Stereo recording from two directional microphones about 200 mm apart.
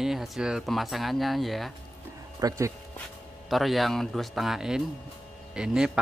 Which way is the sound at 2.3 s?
15° right (ahead or behind).